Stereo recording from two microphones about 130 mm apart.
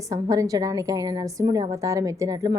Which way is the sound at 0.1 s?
25° right (ahead or behind).